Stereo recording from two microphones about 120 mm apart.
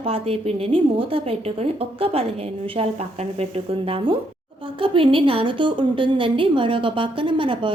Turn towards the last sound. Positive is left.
turn(degrees=-45)  # may be behind; listen again after turning